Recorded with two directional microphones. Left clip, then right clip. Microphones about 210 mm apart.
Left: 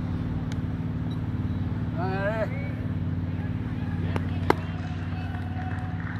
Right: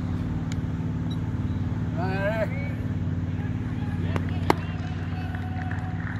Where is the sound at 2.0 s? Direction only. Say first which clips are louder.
Right 1 dB; 45° right (ahead or behind).